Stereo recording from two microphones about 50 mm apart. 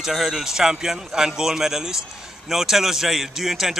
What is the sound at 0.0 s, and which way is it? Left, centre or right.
A man's voice, centre.